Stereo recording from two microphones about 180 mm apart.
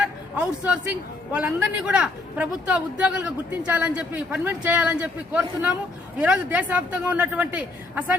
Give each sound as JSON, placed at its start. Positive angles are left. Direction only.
{"t": 0.3, "sound": "a man's voice", "side_deg": -5}